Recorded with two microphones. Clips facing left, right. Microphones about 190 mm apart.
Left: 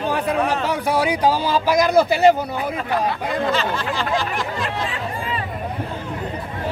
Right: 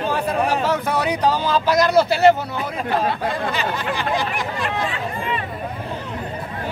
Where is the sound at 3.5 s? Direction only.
15° right (ahead or behind).